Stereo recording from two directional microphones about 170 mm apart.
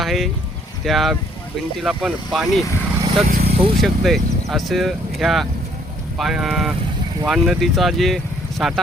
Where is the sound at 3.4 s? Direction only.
35° right (ahead or behind).